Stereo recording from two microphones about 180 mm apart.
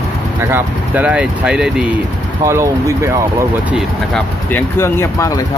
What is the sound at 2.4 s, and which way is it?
Speech, 15° right (ahead or behind).